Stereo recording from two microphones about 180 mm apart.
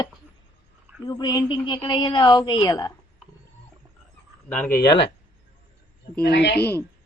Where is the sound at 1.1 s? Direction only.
25° left (ahead or behind).